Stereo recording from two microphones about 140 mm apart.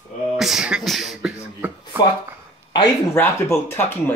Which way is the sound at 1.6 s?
10° right (ahead or behind).